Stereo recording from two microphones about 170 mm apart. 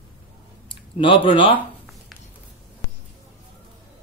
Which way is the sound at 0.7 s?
30° left (ahead or behind).